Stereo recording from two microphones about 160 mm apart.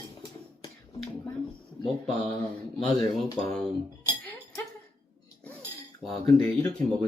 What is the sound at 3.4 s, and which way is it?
Speech, 5° left (ahead or behind).